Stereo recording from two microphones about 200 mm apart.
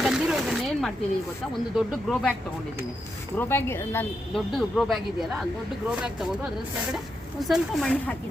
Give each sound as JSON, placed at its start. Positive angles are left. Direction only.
{"t": 0.0, "sound": "a sound", "side_deg": 0}
{"t": 1.7, "sound": "speech", "side_deg": 0}
{"t": 3.3, "sound": "speech", "side_deg": 10}
{"t": 4.4, "sound": "speech", "side_deg": 0}